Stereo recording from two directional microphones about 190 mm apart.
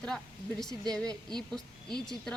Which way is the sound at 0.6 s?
5° left (ahead or behind).